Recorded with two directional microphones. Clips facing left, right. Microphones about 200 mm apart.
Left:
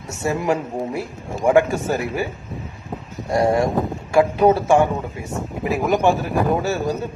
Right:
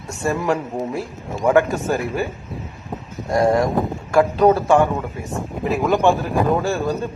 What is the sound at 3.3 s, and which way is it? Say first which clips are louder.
A man's voice: right 1 dB; 25° left (ahead or behind).